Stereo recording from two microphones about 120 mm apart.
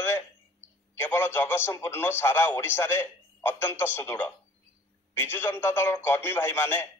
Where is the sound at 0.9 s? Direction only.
20° left (ahead or behind).